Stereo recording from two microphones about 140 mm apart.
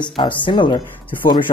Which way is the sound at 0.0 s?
35° left (ahead or behind).